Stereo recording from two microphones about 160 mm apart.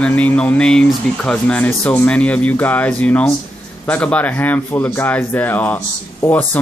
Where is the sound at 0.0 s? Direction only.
10° left (ahead or behind).